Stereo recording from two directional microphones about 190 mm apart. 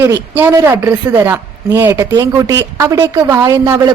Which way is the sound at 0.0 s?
10° right (ahead or behind).